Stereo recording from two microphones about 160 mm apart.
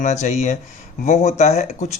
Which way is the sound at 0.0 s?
50° left (ahead or behind).